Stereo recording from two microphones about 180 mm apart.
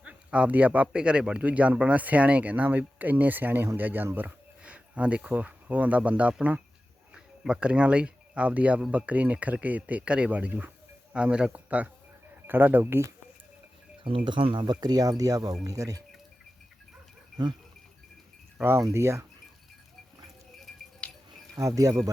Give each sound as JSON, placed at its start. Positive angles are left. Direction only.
{"t": 0.0, "sound": "speech", "side_deg": -5}
{"t": 14.3, "sound": "speech", "side_deg": -25}
{"t": 18.5, "sound": "speech", "side_deg": -15}
{"t": 20.7, "sound": "music", "side_deg": 0}
{"t": 21.5, "sound": "speech", "side_deg": -20}